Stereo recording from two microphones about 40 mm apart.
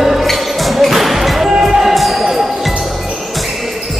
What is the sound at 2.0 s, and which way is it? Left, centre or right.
Basketball bounce, centre.